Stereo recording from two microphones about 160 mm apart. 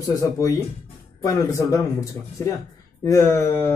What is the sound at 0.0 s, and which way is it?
Speech, 20° left (ahead or behind).